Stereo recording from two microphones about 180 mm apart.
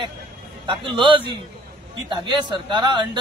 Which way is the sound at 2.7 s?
25° right (ahead or behind).